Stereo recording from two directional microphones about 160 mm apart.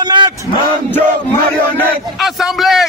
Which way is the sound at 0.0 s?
30° right (ahead or behind).